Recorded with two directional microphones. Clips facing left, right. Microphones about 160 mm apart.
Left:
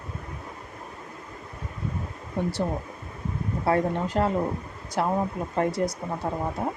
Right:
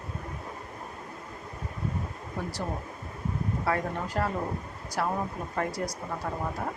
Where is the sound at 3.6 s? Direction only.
25° left (ahead or behind).